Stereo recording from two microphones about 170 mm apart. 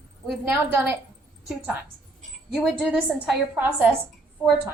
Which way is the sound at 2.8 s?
5° right (ahead or behind).